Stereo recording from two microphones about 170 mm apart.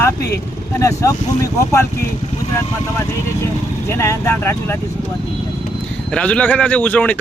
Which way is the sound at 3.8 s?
15° left (ahead or behind).